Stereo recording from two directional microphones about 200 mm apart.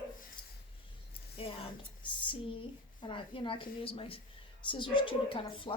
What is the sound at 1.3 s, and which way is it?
Speech, 30° left (ahead or behind).